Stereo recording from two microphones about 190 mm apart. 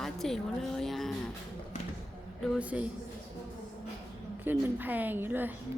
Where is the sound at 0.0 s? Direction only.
Centre (ahead or behind).